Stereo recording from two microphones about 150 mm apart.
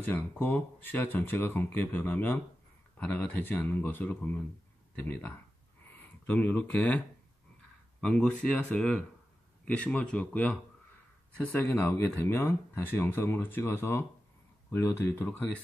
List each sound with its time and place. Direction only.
0.0 s speech: 15° left (ahead or behind)
5.9 s speech: 10° left (ahead or behind)
8.0 s speech: 5° left (ahead or behind)